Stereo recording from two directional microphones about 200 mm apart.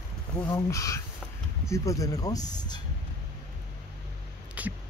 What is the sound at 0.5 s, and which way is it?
Speech, 15° left (ahead or behind).